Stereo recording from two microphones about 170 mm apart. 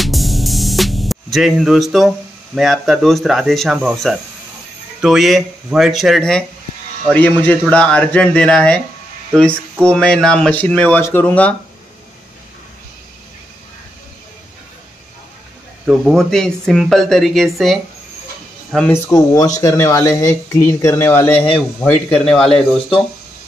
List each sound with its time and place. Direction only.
0.0 s music: centre (ahead or behind)
5.0 s speech: centre (ahead or behind)
9.8 s speech: 5° left (ahead or behind)
15.9 s speech: centre (ahead or behind)
18.9 s speech: 15° left (ahead or behind)